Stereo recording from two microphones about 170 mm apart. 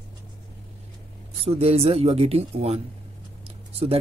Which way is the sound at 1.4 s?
35° right (ahead or behind).